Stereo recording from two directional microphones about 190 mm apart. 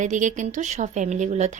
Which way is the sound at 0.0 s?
40° right (ahead or behind).